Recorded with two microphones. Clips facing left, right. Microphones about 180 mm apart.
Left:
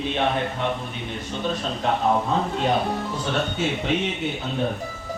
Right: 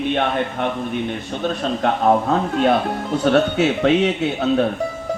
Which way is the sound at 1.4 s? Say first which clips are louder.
Right 5 dB; 60° right (ahead or behind).